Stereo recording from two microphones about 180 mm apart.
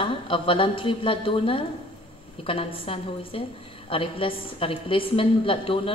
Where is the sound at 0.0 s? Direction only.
30° left (ahead or behind).